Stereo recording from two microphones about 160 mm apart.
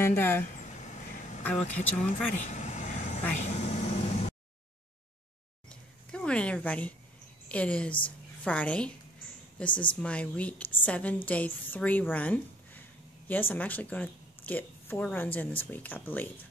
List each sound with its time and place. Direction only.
0.0 s speech: 15° left (ahead or behind)
0.7 s a sound: 50° left (ahead or behind)
1.4 s speech: 5° left (ahead or behind)
2.3 s vehicle: 50° left (ahead or behind)
5.7 s a sound: 5° left (ahead or behind)
7.4 s speech: 10° left (ahead or behind)
9.7 s a woman's voice: 30° left (ahead or behind)
9.9 s speech: 5° left (ahead or behind)